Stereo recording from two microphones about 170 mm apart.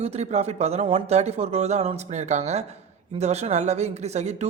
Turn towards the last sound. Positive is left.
turn(degrees=-40)  # may be behind; listen again after turning